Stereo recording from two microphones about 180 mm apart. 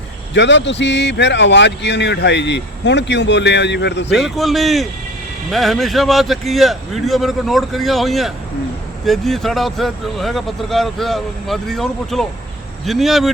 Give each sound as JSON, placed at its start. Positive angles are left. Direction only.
{"t": 0.3, "sound": "speech", "side_deg": 80}
{"t": 4.1, "sound": "speech", "side_deg": 0}